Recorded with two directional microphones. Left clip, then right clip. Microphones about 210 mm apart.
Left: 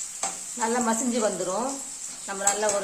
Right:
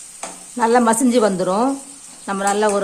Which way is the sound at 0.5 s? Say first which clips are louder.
Right 11 dB; 45° right (ahead or behind).